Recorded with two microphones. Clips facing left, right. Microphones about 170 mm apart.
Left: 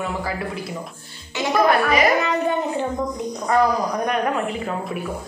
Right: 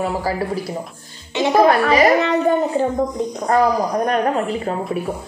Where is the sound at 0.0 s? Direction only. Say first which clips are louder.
Right 5 dB; 35° right (ahead or behind).